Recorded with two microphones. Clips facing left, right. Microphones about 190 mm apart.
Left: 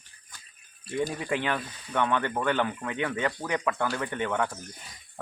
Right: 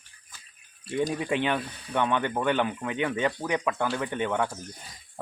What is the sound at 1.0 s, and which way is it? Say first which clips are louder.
Speech: right 3 dB; 20° right (ahead or behind).